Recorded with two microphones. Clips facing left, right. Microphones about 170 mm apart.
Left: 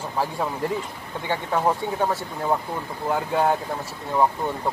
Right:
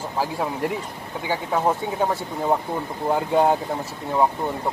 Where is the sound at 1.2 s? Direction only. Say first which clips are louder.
Right 1 dB; 10° right (ahead or behind).